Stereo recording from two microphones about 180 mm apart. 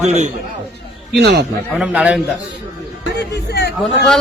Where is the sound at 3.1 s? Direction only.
70° left (ahead or behind).